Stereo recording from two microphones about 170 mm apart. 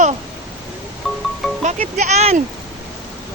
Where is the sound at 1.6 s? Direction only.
45° right (ahead or behind).